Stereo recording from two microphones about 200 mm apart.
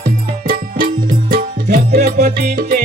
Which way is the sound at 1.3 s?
40° right (ahead or behind).